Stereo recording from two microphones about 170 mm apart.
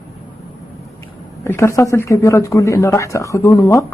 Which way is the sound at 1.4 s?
15° left (ahead or behind).